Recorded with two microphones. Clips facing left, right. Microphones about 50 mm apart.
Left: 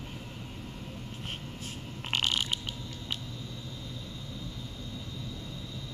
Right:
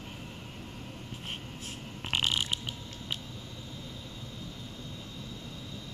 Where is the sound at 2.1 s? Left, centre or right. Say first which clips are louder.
Even; centre.